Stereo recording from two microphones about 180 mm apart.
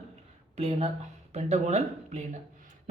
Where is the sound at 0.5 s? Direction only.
35° right (ahead or behind).